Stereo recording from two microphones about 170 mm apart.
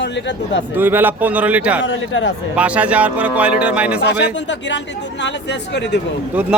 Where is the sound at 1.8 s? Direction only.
90° left.